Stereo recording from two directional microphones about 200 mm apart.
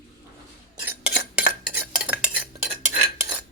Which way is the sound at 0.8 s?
5° right (ahead or behind).